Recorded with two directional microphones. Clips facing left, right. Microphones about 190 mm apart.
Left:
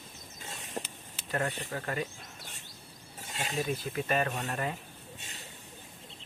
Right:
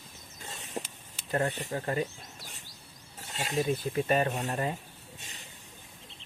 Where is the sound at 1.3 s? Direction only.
25° right (ahead or behind).